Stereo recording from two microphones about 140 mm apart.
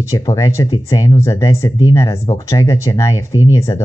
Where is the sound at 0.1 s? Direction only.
25° left (ahead or behind).